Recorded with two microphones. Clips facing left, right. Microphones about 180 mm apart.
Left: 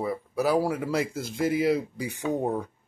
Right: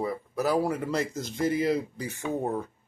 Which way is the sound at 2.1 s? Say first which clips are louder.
Left 3 dB; 15° left (ahead or behind).